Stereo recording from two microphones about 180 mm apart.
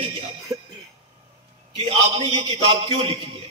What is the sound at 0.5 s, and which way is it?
Throat clearing, 20° right (ahead or behind).